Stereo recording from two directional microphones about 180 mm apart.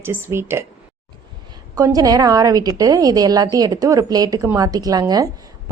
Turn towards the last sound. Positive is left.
turn(degrees=-20)  # may be behind; listen again after turning